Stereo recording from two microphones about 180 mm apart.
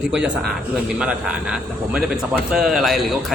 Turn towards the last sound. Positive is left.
turn(degrees=0)  # may be behind; listen again after turning